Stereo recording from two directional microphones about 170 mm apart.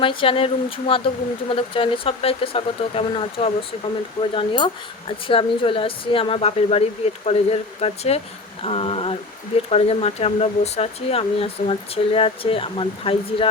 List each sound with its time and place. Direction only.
0.0 s speech: 30° left (ahead or behind)